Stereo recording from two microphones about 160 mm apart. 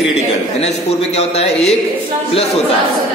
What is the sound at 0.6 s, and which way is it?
A man's voice, 40° left (ahead or behind).